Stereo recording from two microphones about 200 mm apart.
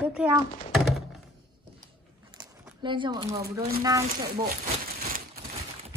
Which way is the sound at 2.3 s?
25° right (ahead or behind).